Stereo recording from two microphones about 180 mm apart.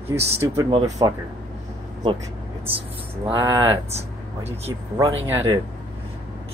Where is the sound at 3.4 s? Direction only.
10° right (ahead or behind).